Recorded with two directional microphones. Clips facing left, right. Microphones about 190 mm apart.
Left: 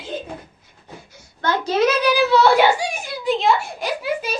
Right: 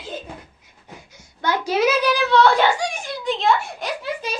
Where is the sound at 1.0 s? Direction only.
15° right (ahead or behind); by 4.3 s centre (ahead or behind).